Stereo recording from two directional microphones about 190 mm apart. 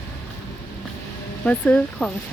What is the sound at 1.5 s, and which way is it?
Speech, 5° left (ahead or behind).